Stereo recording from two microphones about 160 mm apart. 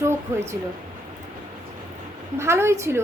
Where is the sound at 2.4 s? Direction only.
15° right (ahead or behind).